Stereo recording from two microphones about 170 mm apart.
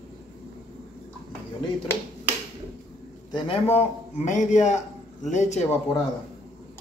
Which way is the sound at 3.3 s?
35° left (ahead or behind).